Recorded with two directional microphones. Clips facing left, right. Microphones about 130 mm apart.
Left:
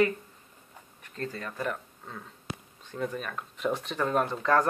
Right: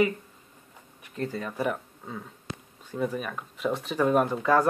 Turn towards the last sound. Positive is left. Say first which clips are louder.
# right 3 dB
turn(degrees=-10)  # may be behind; listen again after turning